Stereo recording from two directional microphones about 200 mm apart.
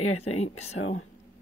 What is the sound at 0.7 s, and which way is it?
Speech, 75° left (ahead or behind).